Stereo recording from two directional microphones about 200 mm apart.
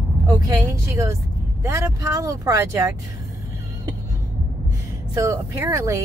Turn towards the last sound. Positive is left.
turn(degrees=-15)  # may be behind; listen again after turning